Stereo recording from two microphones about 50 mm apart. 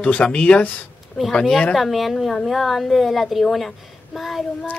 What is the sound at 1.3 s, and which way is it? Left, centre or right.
Speech, centre.